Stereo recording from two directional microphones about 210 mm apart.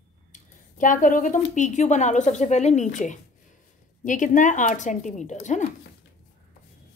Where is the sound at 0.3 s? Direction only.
40° left (ahead or behind).